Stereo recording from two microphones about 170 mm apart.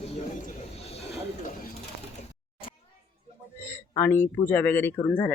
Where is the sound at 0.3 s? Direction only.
45° left (ahead or behind).